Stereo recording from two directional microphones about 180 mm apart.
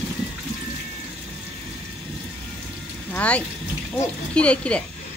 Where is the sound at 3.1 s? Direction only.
5° left (ahead or behind).